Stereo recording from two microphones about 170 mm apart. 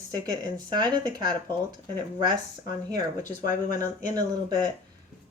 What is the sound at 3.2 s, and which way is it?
Speech, 50° left (ahead or behind).